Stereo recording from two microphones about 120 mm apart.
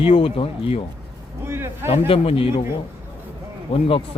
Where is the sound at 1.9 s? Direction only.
55° left (ahead or behind).